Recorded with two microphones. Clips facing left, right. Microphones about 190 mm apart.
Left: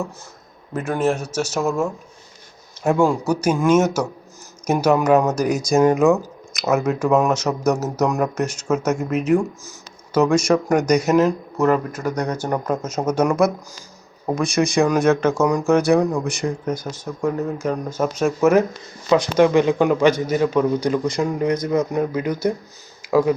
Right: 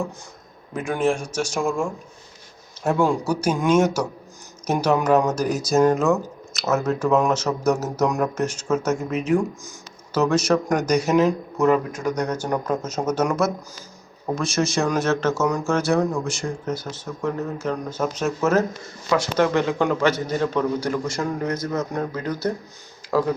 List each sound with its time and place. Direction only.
0.7 s a man's voice: 5° left (ahead or behind)